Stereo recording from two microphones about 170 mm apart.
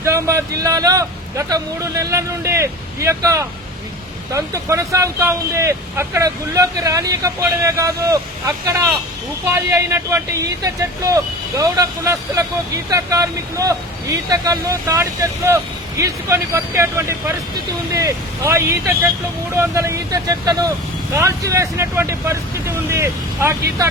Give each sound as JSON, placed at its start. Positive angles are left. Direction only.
{"t": 0.0, "sound": "speech", "side_deg": -15}